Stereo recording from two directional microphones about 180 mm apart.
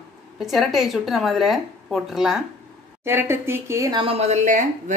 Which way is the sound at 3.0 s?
15° right (ahead or behind).